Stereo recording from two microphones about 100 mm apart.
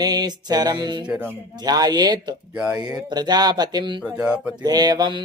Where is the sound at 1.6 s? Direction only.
40° right (ahead or behind).